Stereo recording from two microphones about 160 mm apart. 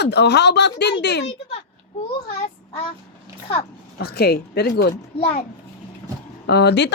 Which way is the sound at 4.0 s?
80° left.